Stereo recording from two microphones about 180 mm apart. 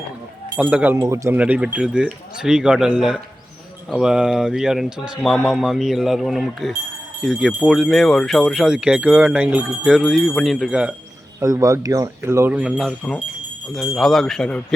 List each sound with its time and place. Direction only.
0.5 s speech: 10° right (ahead or behind)
11.3 s speech: 15° right (ahead or behind); by 14.6 s 5° left (ahead or behind)